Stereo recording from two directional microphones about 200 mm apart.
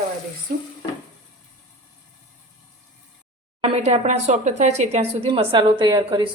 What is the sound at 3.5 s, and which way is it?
Speech, 30° right (ahead or behind).